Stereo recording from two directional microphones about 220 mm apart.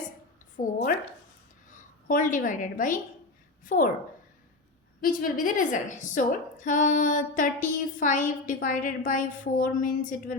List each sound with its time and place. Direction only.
0.5 s a woman's voice: 35° left (ahead or behind)
4.9 s a woman's voice: 40° left (ahead or behind)